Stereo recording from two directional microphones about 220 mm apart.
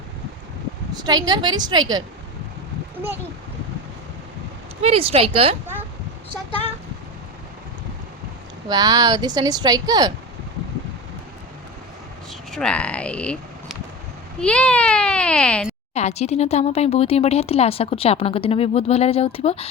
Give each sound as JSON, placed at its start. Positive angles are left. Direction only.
{"t": 0.9, "sound": "a woman's voice", "side_deg": -20}
{"t": 4.8, "sound": "a woman's voice", "side_deg": -25}
{"t": 8.7, "sound": "speech", "side_deg": -20}
{"t": 12.3, "sound": "speech", "side_deg": 0}
{"t": 16.0, "sound": "speech", "side_deg": 30}